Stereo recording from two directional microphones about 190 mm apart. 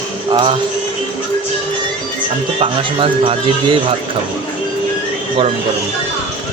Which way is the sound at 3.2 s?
30° right (ahead or behind).